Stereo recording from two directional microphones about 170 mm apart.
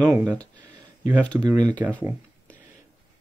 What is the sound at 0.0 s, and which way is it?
Speech, 20° right (ahead or behind).